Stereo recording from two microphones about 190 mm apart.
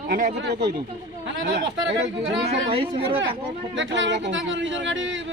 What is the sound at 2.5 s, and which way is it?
Speech, 30° right (ahead or behind).